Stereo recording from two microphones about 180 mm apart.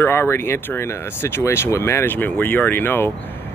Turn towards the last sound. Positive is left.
turn(degrees=10)  # may be behind; listen again after turning